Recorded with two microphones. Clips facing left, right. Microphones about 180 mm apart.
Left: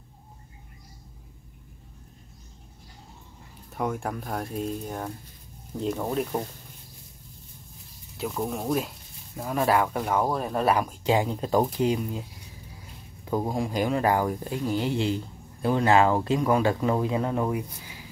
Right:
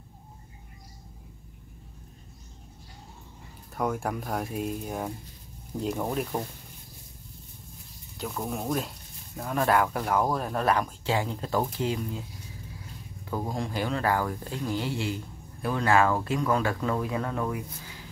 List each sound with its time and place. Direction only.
3.7 s speech: centre (ahead or behind)
6.0 s speech: 5° left (ahead or behind)
8.2 s speech: 5° left (ahead or behind)
13.2 s a sound: 15° left (ahead or behind)
13.5 s speech: 10° left (ahead or behind)
16.3 s speech: 10° left (ahead or behind)
16.6 s speech: 25° left (ahead or behind)